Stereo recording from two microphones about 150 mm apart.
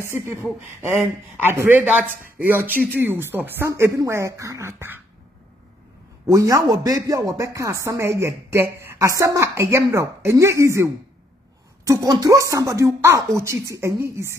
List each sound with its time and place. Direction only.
0.0 s speech: 15° right (ahead or behind)
6.2 s speech: 20° right (ahead or behind)